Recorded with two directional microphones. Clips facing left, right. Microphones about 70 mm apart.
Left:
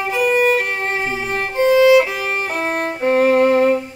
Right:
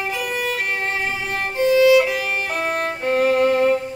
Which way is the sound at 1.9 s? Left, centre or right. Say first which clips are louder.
Left 2 dB; left.